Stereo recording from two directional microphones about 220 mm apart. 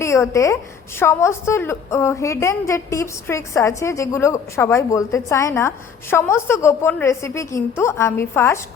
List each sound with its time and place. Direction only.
0.0 s a woman's voice: 15° left (ahead or behind)